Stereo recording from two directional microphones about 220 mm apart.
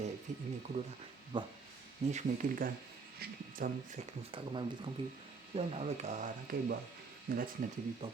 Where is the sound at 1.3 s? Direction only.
20° right (ahead or behind).